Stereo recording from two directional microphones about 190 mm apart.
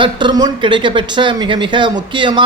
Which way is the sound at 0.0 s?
25° right (ahead or behind).